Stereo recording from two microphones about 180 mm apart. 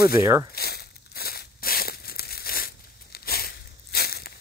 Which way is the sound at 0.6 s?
60° left (ahead or behind).